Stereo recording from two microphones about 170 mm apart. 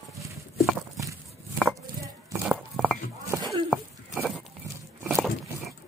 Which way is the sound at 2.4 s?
5° right (ahead or behind).